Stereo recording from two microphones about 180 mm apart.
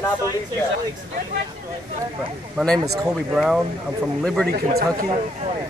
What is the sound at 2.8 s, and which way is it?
Speech, 20° right (ahead or behind).